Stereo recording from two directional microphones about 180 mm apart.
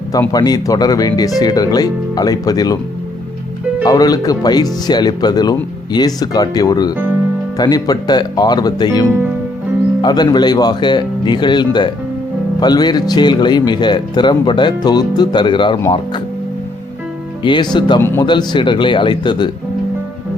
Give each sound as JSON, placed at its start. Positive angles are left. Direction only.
{"t": 0.1, "sound": "speech", "side_deg": 20}
{"t": 3.8, "sound": "speech", "side_deg": 20}
{"t": 17.4, "sound": "speech", "side_deg": 25}